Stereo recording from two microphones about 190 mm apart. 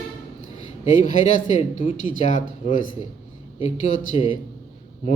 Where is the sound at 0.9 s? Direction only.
40° left (ahead or behind).